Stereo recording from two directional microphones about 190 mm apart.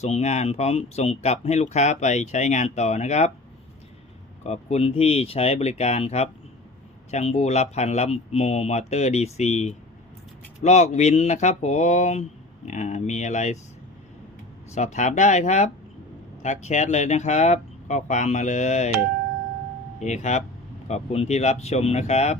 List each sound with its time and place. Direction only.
0.0 s speech: 35° left (ahead or behind)
4.4 s speech: 35° left (ahead or behind)
14.8 s speech: 40° left (ahead or behind)
20.0 s speech: 40° left (ahead or behind)